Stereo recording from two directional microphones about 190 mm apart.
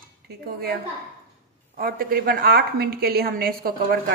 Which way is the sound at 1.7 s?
50° right (ahead or behind).